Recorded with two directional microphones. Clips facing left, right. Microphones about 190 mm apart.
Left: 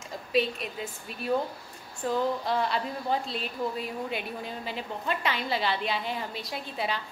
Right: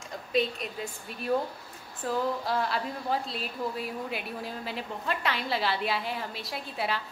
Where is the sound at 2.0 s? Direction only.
Centre (ahead or behind).